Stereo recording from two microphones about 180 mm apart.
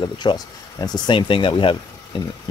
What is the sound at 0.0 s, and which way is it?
Speech, 25° left (ahead or behind).